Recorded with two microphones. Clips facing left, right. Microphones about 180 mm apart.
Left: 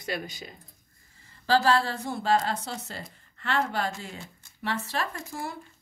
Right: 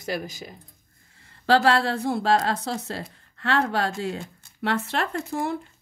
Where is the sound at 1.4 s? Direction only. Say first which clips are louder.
Right 3 dB; 75° right (ahead or behind).